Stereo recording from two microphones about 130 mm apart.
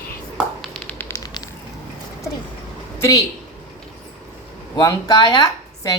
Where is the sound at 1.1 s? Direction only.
30° left (ahead or behind).